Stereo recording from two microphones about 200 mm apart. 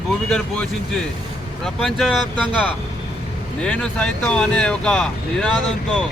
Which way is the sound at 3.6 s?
5° left (ahead or behind).